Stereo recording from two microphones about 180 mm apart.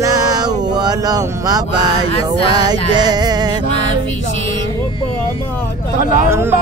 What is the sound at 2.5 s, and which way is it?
Music, 20° right (ahead or behind).